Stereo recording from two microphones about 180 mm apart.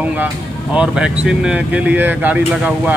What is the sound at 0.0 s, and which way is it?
Speech, 10° right (ahead or behind).